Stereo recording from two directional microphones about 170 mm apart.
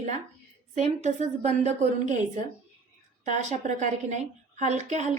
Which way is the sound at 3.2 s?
45° right (ahead or behind).